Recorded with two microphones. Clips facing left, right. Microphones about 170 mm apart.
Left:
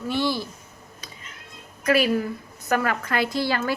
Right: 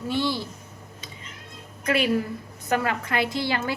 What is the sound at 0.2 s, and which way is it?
Speech, 50° left (ahead or behind).